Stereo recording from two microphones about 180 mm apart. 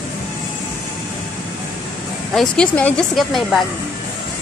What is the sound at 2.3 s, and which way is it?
Speech, 5° left (ahead or behind).